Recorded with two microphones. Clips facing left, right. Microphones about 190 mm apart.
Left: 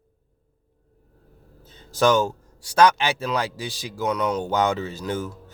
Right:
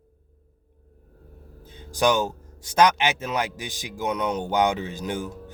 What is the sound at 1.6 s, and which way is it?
Speech, 15° right (ahead or behind).